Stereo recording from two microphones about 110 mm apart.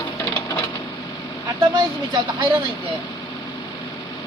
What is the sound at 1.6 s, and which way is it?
Speech, 45° right (ahead or behind).